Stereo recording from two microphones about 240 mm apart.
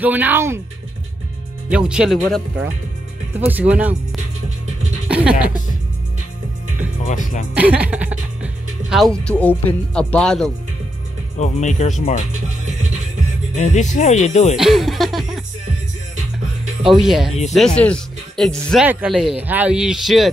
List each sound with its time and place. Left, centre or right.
0.0 s speech: centre
1.7 s a man's voice: centre
5.0 s music: centre
7.1 s speech: left
7.5 s speech: centre
11.3 s speech: left
13.6 s speech: left
14.6 s a man's voice: centre
16.8 s a man's voice: centre